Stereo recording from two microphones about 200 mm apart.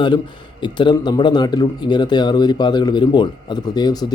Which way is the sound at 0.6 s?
25° left (ahead or behind).